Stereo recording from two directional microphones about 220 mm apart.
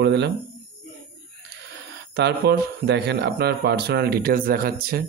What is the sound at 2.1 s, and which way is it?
Speech, 50° right (ahead or behind).